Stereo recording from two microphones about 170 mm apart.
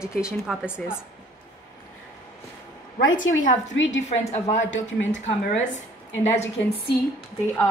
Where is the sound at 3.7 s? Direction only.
90° left.